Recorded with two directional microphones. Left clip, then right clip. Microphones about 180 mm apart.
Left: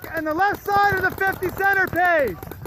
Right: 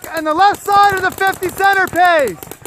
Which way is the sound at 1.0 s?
45° right (ahead or behind).